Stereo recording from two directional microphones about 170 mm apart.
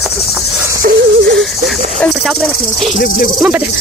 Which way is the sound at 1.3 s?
Centre (ahead or behind).